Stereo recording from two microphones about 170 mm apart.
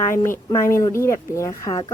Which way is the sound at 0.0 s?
15° left (ahead or behind).